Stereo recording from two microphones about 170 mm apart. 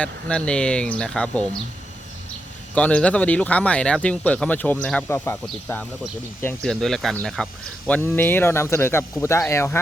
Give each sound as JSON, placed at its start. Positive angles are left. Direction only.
{"t": 0.0, "sound": "speech", "side_deg": 5}
{"t": 2.7, "sound": "speech", "side_deg": 10}